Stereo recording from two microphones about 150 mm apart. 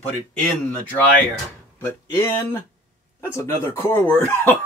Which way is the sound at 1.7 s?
15° left (ahead or behind).